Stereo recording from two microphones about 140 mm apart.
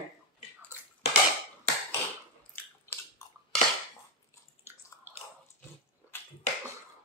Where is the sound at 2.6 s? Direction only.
15° left (ahead or behind).